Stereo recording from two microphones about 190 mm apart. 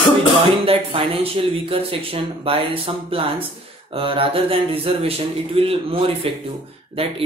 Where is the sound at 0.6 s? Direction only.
30° right (ahead or behind).